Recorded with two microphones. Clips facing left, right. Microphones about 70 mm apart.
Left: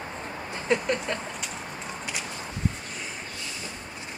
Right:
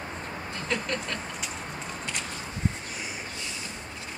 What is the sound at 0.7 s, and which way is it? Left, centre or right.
Vehicle, left.